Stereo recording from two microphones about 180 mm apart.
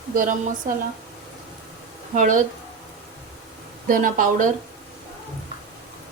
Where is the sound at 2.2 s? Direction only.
45° right (ahead or behind).